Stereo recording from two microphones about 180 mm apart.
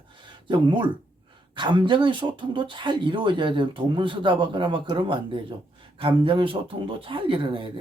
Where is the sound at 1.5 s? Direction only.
25° right (ahead or behind).